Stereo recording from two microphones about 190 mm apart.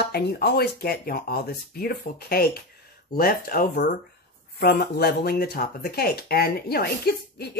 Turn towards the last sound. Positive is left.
turn(degrees=55)  # may be behind; listen again after turning